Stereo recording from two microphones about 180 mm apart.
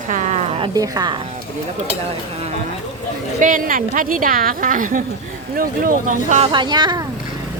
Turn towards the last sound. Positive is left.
turn(degrees=-25)  # may be behind; listen again after turning